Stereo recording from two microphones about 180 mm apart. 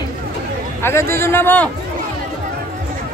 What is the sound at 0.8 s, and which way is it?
Speech, 15° left (ahead or behind).